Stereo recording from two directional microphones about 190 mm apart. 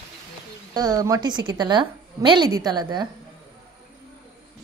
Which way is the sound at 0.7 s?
20° right (ahead or behind).